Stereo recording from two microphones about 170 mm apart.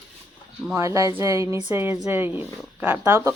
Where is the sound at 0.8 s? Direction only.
20° right (ahead or behind).